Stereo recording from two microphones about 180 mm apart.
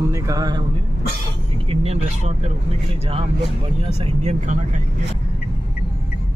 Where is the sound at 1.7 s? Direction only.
35° right (ahead or behind).